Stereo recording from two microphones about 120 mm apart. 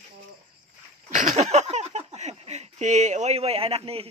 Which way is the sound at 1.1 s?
80° right.